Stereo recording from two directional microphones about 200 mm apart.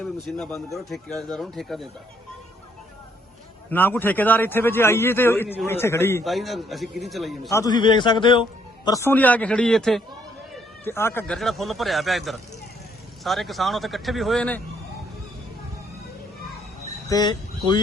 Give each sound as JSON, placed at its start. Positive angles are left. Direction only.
{"t": 0.3, "sound": "speech", "side_deg": 0}
{"t": 3.7, "sound": "a man's voice", "side_deg": 10}
{"t": 6.2, "sound": "speech", "side_deg": 0}
{"t": 7.5, "sound": "a man's voice", "side_deg": 20}
{"t": 11.3, "sound": "speech", "side_deg": 0}
{"t": 17.1, "sound": "speech", "side_deg": 20}